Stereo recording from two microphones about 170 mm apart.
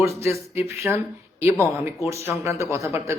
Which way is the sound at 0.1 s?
15° right (ahead or behind).